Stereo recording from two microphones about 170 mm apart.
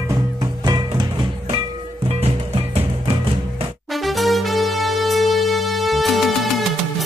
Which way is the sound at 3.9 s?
Centre (ahead or behind).